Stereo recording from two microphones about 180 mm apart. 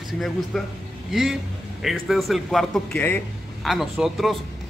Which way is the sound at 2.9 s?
10° left (ahead or behind).